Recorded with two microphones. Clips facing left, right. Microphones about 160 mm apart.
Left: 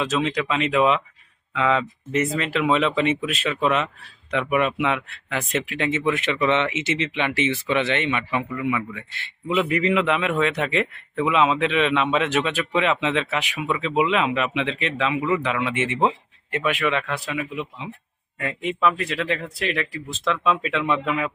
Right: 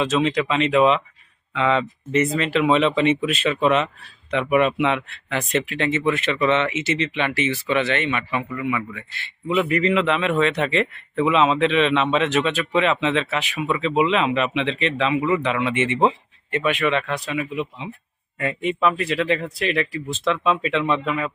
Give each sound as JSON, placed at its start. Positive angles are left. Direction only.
{"t": 0.0, "sound": "a man's voice", "side_deg": 0}